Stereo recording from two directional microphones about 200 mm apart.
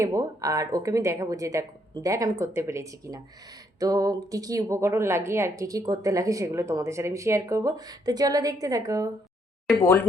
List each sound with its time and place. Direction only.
0.0 s speech: 15° right (ahead or behind)
9.6 s speech: 10° left (ahead or behind)